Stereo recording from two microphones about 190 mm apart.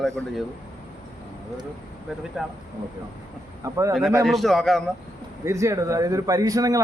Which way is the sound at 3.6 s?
15° right (ahead or behind).